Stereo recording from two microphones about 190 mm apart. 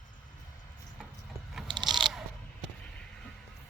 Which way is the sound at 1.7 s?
25° right (ahead or behind).